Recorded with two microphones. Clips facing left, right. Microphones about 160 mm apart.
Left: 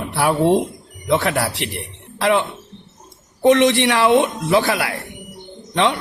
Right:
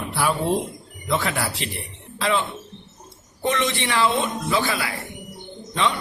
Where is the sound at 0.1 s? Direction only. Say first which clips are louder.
Left 7 dB; 65° left (ahead or behind).